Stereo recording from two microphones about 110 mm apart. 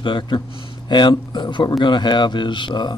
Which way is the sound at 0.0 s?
45° left (ahead or behind).